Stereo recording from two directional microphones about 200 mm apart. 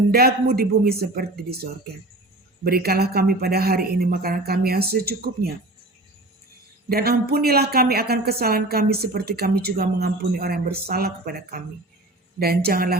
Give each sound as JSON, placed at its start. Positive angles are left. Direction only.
{"t": 0.1, "sound": "speech", "side_deg": -50}
{"t": 2.6, "sound": "speech", "side_deg": -50}
{"t": 6.8, "sound": "speech", "side_deg": -50}